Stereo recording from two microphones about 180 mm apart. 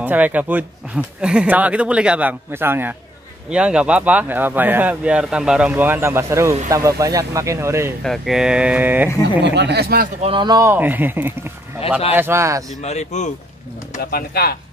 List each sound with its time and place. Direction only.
0.0 s speech: 10° right (ahead or behind)
8.0 s speech: centre (ahead or behind)
9.4 s speech: 70° right (ahead or behind)
10.2 s speech: 25° right (ahead or behind)
12.8 s speech: 40° left (ahead or behind)
13.9 s speech: 55° left (ahead or behind)